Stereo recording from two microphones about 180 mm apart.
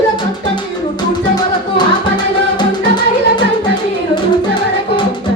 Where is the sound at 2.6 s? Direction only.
25° left (ahead or behind).